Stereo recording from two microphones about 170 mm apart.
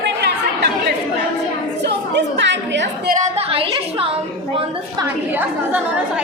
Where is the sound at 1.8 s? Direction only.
90° right.